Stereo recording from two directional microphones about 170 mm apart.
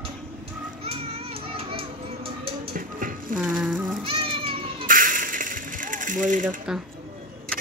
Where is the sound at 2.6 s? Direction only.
55° right (ahead or behind).